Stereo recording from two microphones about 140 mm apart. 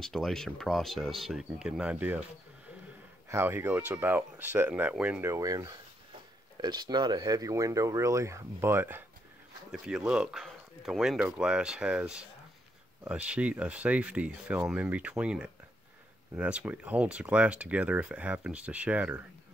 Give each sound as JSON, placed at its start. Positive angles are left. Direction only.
{"t": 0.0, "sound": "speech", "side_deg": 0}
{"t": 3.3, "sound": "speech", "side_deg": -15}
{"t": 5.2, "sound": "speech", "side_deg": -20}
{"t": 9.7, "sound": "speech", "side_deg": -5}